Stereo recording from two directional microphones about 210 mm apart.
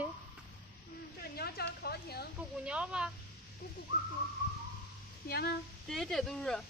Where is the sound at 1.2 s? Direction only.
45° left (ahead or behind).